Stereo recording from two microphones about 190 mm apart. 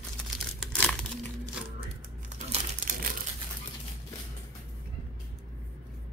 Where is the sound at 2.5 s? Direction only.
45° right (ahead or behind).